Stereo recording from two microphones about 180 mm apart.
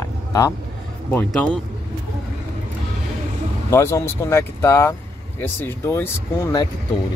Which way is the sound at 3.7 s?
15° left (ahead or behind).